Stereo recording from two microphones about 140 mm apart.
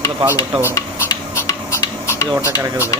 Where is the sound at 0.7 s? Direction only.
25° left (ahead or behind).